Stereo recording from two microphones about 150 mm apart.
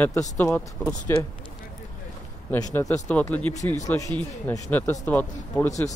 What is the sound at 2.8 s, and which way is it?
Speech, 20° left (ahead or behind).